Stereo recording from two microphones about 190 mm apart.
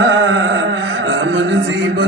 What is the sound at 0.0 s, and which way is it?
Music, 70° right (ahead or behind).